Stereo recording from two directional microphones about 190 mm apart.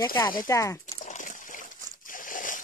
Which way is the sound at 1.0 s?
40° left (ahead or behind).